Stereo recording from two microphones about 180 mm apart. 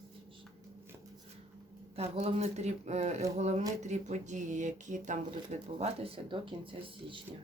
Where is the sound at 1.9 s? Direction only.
35° right (ahead or behind).